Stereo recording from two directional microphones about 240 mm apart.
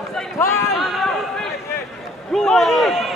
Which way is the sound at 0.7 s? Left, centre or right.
Centre.